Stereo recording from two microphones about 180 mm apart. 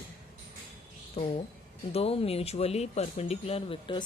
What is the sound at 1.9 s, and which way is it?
Speech, 35° left (ahead or behind).